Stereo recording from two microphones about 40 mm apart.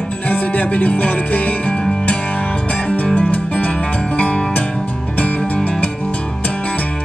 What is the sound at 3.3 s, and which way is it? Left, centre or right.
Music, left.